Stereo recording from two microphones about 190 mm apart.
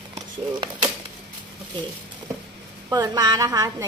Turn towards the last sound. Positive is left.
turn(degrees=-20)  # may be behind; listen again after turning